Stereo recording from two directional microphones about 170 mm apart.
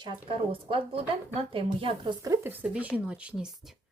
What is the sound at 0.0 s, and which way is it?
Speech, 30° right (ahead or behind).